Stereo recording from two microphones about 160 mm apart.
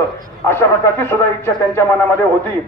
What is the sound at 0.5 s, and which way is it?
A man's voice, 15° left (ahead or behind).